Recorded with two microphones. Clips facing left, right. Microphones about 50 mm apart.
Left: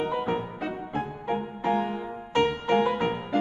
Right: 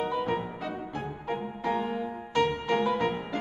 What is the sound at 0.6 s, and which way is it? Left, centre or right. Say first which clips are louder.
Music: left 4 dB; left.